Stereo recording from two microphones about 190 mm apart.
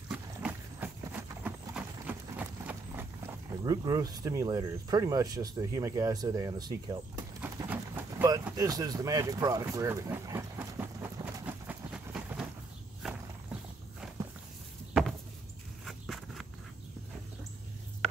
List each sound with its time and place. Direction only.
0.1 s horse: 10° right (ahead or behind)
3.6 s speech: 20° right (ahead or behind)
7.7 s vehicle: 15° right (ahead or behind)
13.0 s a sound: centre (ahead or behind)
14.0 s walk: 5° right (ahead or behind)
15.8 s walk: centre (ahead or behind)